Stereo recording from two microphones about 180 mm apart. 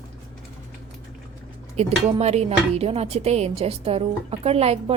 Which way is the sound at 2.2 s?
35° right (ahead or behind).